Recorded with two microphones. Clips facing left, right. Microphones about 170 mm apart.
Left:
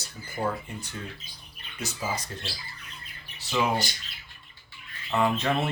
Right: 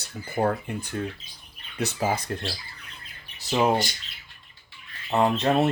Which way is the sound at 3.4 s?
40° right (ahead or behind).